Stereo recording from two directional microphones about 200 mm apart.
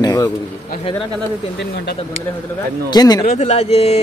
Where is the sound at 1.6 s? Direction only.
55° left (ahead or behind).